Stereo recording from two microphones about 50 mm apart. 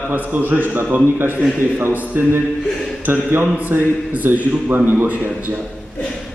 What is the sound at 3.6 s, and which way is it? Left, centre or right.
A man's voice, right.